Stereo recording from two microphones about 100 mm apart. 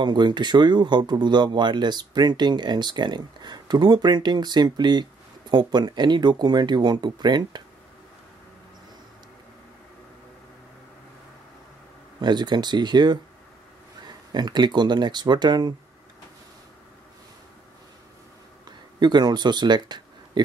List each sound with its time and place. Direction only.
0.0 s speech: 50° right (ahead or behind)
12.2 s speech: 50° right (ahead or behind)
18.7 s speech: 45° right (ahead or behind)